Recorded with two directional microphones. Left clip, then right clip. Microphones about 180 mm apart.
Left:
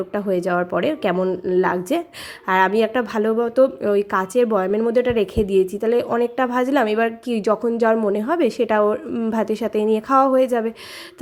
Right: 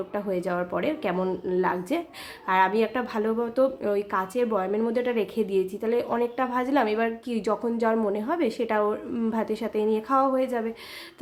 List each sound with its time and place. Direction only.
0.1 s a woman's voice: 35° left (ahead or behind)